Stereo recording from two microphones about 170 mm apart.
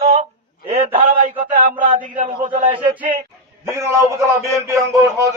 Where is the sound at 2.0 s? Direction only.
50° right (ahead or behind).